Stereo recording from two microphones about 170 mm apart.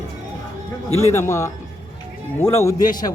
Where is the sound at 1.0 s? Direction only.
15° left (ahead or behind).